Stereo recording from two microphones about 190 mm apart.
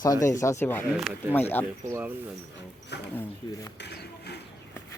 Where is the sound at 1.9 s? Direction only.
10° right (ahead or behind).